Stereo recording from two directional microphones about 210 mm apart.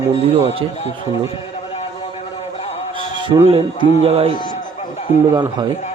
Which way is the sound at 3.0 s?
25° right (ahead or behind).